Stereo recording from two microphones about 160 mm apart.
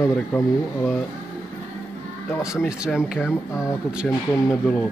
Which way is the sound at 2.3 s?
15° left (ahead or behind).